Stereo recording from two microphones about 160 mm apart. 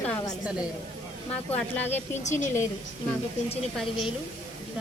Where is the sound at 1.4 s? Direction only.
10° left (ahead or behind).